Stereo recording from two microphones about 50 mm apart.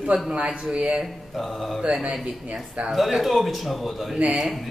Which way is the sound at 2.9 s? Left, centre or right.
Centre.